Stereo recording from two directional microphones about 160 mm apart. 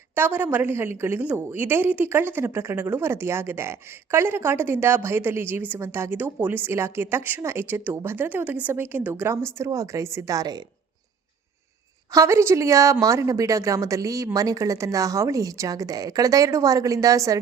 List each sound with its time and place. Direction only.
0.2 s a woman's voice: 10° right (ahead or behind)
12.1 s a woman's voice: 20° right (ahead or behind)